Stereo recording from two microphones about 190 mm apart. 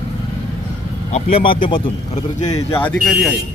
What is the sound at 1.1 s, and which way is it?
Speech, 35° left (ahead or behind).